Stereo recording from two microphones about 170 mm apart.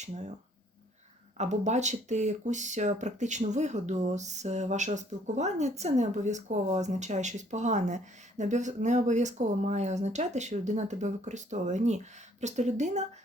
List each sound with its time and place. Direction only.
0.0 s speech: 40° right (ahead or behind)
1.4 s speech: 45° right (ahead or behind)